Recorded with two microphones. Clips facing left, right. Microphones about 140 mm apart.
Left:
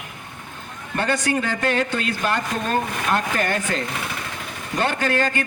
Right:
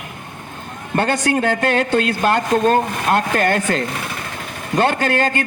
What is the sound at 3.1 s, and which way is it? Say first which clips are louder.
A man's voice: right 6 dB; 60° right (ahead or behind).